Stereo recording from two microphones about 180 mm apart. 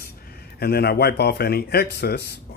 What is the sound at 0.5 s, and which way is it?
Speech, 60° left (ahead or behind).